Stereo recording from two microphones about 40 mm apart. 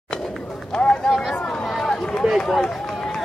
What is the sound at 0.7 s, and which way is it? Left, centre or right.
Speech, centre.